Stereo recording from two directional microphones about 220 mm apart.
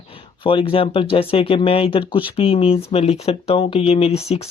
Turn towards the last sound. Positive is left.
turn(degrees=30)  # may be behind; listen again after turning